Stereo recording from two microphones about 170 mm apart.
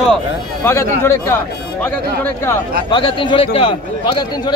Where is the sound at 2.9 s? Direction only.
30° left (ahead or behind).